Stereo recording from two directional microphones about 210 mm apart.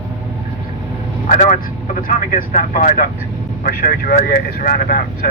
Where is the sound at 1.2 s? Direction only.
35° left (ahead or behind).